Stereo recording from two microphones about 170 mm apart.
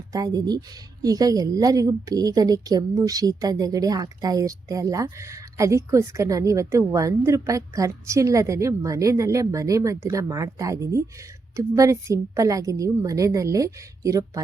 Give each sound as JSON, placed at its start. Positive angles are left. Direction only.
{"t": 0.1, "sound": "a woman's voice", "side_deg": -20}